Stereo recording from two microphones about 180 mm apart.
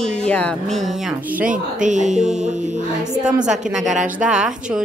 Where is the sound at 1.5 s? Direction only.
45° right (ahead or behind).